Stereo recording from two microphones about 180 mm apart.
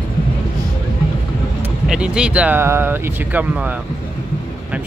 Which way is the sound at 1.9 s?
5° right (ahead or behind).